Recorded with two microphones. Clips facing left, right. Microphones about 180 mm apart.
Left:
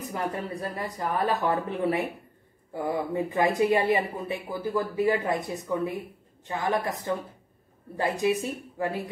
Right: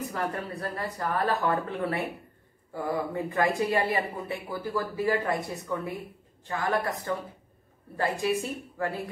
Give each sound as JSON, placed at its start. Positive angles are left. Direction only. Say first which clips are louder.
{"t": 0.1, "sound": "speech", "louder": "left 1 dB", "side_deg": 15}